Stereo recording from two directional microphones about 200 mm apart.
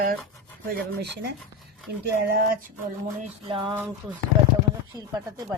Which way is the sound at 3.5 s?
25° right (ahead or behind).